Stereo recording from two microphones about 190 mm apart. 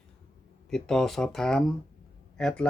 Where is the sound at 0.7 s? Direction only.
Centre (ahead or behind).